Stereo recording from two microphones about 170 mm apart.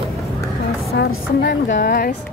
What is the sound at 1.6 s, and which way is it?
Speech, 50° left (ahead or behind).